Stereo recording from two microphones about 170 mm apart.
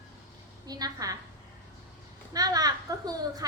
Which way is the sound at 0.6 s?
20° right (ahead or behind).